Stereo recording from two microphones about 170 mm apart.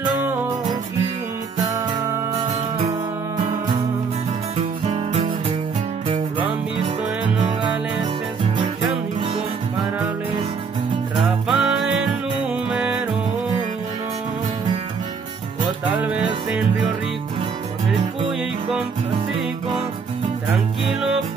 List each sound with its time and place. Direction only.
4.6 s music: 40° right (ahead or behind)
11.4 s music: centre (ahead or behind)
16.0 s music: 10° right (ahead or behind)